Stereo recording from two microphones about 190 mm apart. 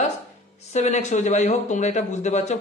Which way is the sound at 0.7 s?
35° left (ahead or behind).